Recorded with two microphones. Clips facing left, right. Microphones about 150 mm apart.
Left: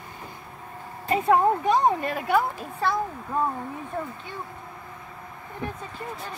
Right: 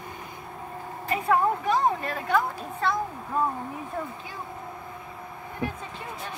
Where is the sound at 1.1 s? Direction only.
25° left (ahead or behind).